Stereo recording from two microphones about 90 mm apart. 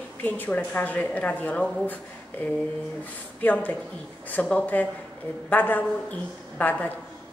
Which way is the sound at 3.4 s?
20° left (ahead or behind).